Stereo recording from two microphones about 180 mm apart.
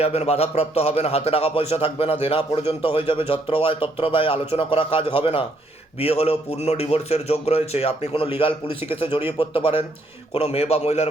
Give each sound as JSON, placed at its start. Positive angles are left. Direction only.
{"t": 0.0, "sound": "a man's voice", "side_deg": 35}